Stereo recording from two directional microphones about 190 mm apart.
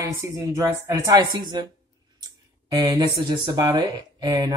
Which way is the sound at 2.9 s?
25° right (ahead or behind).